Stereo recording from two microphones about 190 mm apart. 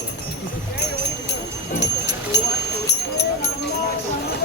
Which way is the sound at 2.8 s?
65° left (ahead or behind).